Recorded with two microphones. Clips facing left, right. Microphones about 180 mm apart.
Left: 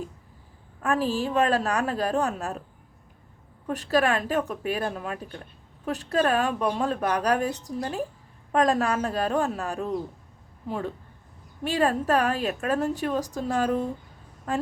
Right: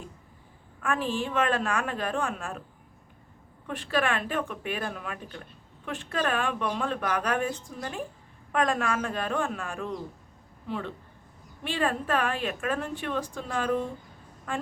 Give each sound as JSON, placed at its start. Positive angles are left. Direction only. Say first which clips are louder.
{"t": 0.8, "sound": "a woman's voice", "louder": "left 4 dB", "side_deg": 40}
{"t": 3.7, "sound": "a woman's voice", "louder": "left 5 dB", "side_deg": 40}